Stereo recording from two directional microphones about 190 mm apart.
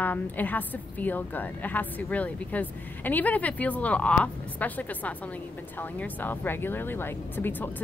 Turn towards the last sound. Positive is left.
turn(degrees=10)  # may be behind; listen again after turning